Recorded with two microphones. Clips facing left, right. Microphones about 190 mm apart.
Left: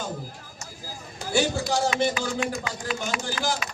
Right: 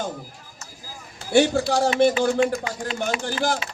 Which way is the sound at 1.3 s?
60° right (ahead or behind).